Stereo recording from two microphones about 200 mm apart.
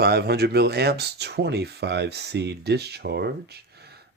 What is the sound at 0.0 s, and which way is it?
Speech, 55° right (ahead or behind).